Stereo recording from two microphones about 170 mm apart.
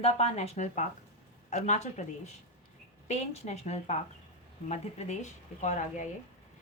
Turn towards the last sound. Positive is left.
turn(degrees=45)  # may be behind; listen again after turning